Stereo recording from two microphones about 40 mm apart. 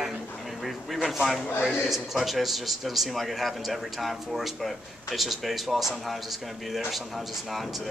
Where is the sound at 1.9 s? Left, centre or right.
Centre.